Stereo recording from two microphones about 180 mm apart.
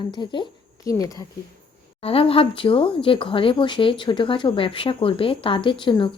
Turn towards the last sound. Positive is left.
turn(degrees=25)  # may be behind; listen again after turning